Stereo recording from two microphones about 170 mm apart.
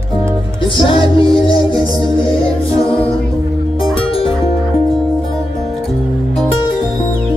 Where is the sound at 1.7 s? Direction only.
25° right (ahead or behind).